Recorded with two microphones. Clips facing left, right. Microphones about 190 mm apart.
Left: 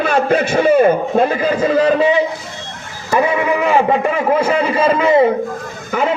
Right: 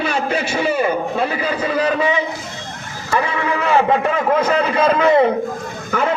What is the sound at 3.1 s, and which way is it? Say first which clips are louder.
A man's voice: left 5 dB; 15° left (ahead or behind).